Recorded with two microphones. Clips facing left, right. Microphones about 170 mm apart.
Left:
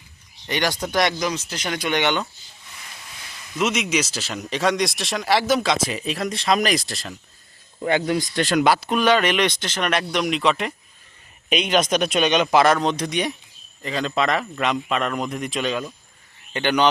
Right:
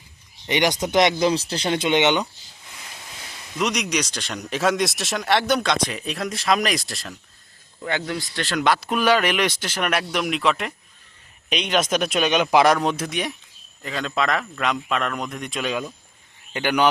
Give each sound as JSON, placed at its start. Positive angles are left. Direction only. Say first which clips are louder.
{"t": 0.4, "sound": "speech", "louder": "right 3 dB", "side_deg": -20}
{"t": 3.6, "sound": "speech", "louder": "left 2 dB", "side_deg": 5}
{"t": 7.9, "sound": "a man's voice", "louder": "left 6 dB", "side_deg": 20}